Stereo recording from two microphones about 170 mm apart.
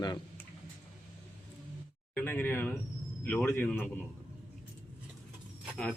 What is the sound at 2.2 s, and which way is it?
Speech, 10° left (ahead or behind).